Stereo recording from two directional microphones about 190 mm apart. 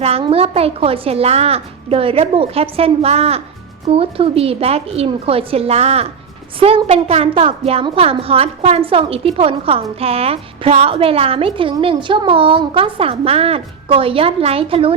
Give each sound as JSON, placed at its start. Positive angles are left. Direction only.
{"t": 0.0, "sound": "a woman's voice", "side_deg": -30}